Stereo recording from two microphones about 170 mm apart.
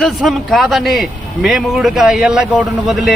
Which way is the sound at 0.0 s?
Centre (ahead or behind).